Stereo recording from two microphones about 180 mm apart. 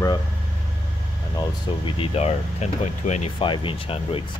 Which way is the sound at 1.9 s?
30° left (ahead or behind).